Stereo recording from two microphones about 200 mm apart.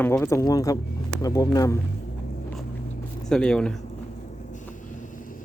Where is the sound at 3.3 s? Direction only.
5° left (ahead or behind).